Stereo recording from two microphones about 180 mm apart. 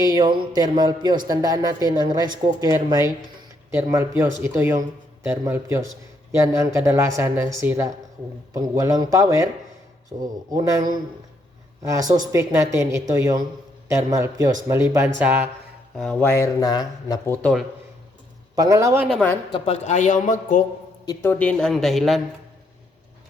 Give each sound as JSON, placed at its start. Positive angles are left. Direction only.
{"t": 0.0, "sound": "speech", "side_deg": -25}
{"t": 16.0, "sound": "speech", "side_deg": 5}
{"t": 17.4, "sound": "speech", "side_deg": 0}
{"t": 18.5, "sound": "speech", "side_deg": -20}
{"t": 19.0, "sound": "speech", "side_deg": 5}
{"t": 19.5, "sound": "a man's voice", "side_deg": 35}
{"t": 21.0, "sound": "speech", "side_deg": 15}